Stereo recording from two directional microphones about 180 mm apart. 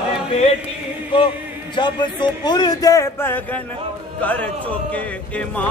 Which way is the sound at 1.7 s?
25° left (ahead or behind).